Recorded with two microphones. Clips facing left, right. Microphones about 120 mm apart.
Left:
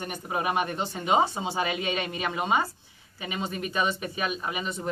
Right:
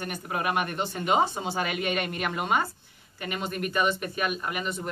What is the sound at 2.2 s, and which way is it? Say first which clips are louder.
Speech: even; centre (ahead or behind).